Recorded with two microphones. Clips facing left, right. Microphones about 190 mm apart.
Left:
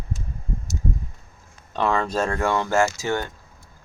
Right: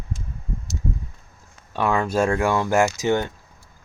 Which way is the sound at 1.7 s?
10° right (ahead or behind).